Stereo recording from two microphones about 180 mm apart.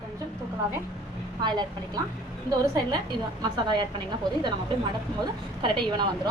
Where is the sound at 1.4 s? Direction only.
25° right (ahead or behind).